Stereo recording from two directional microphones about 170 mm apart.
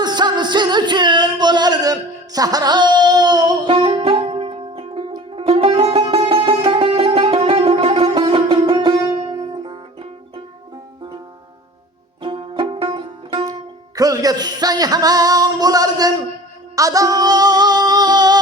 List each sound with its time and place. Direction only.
0.0 s music: 25° right (ahead or behind)
12.2 s music: 30° right (ahead or behind)